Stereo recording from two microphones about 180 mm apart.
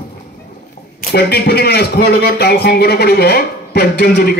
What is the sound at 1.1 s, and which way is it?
A man's voice, 60° left (ahead or behind).